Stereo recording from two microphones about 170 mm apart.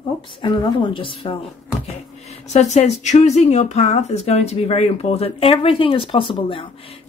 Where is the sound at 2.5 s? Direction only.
40° left (ahead or behind).